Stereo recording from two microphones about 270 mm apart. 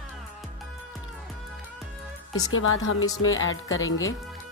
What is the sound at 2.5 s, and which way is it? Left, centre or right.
Speech, left.